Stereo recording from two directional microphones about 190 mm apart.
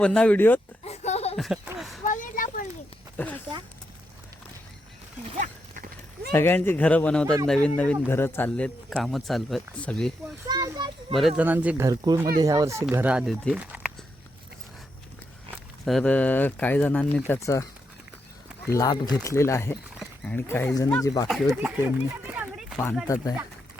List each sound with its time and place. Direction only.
0.0 s speech: 5° left (ahead or behind)
0.9 s a sound: 35° left (ahead or behind)
1.4 s a sound: centre (ahead or behind)
2.0 s a sound: 45° left (ahead or behind)
3.2 s a sound: 10° left (ahead or behind)
5.4 s clip-clop: 45° right (ahead or behind)
6.3 s speech: 10° left (ahead or behind)
10.5 s children playing: 20° right (ahead or behind)
11.1 s speech: centre (ahead or behind)
11.9 s speech: 20° right (ahead or behind)
15.8 s speech: centre (ahead or behind)
18.7 s speech: 20° left (ahead or behind)
21.5 s speech: 5° right (ahead or behind)